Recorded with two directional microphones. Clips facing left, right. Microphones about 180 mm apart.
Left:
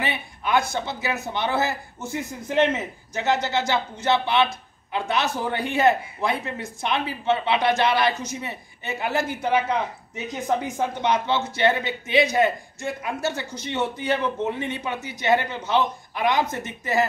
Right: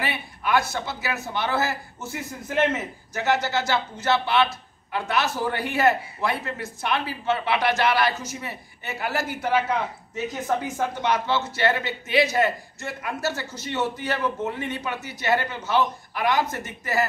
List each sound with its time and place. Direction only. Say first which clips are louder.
0.0 s a man's voice: left 1 dB; 20° left (ahead or behind)